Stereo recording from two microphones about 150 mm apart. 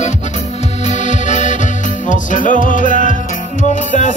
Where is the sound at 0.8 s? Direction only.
55° left (ahead or behind).